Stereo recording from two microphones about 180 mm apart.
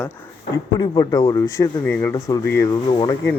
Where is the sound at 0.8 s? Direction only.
20° left (ahead or behind).